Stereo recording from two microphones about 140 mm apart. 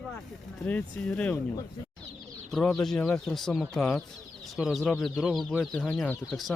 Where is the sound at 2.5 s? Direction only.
5° left (ahead or behind).